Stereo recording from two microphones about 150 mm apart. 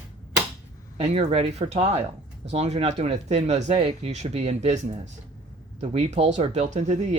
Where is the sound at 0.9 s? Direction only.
40° right (ahead or behind).